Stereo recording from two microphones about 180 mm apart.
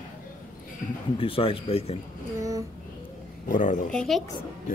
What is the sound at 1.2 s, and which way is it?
Speech, 30° left (ahead or behind).